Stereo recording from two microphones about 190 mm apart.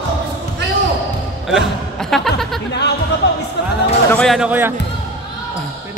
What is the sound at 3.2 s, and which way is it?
Music, 65° left (ahead or behind).